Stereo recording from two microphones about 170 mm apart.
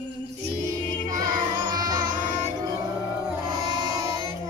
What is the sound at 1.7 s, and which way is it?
Music, 25° right (ahead or behind).